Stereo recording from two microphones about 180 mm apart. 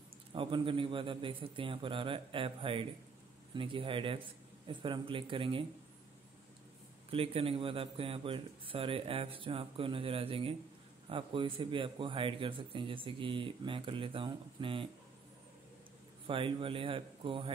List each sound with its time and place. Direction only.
0.3 s a man's voice: 30° right (ahead or behind)
7.1 s a man's voice: 30° right (ahead or behind)
16.3 s a man's voice: 30° right (ahead or behind)